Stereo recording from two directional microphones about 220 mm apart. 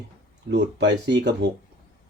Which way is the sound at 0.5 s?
50° right (ahead or behind).